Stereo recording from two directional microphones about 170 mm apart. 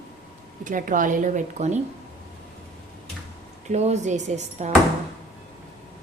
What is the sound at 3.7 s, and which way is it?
Speech, 40° right (ahead or behind).